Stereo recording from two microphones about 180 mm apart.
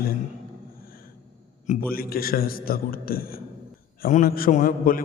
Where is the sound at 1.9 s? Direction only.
55° left (ahead or behind).